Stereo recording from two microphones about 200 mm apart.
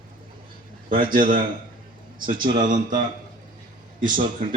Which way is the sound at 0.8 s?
45° right (ahead or behind).